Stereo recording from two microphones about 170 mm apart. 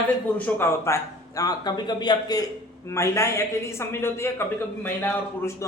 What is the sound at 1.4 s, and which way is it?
A man's voice, 25° left (ahead or behind).